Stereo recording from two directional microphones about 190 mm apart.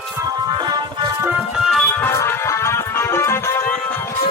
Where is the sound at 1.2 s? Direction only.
Centre (ahead or behind).